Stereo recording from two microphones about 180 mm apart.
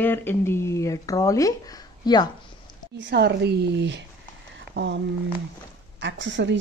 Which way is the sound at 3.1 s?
70° right (ahead or behind).